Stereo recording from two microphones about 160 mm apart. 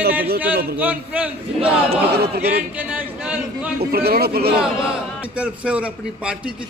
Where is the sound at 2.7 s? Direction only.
10° right (ahead or behind).